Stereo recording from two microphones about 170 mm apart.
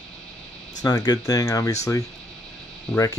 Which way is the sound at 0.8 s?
20° left (ahead or behind).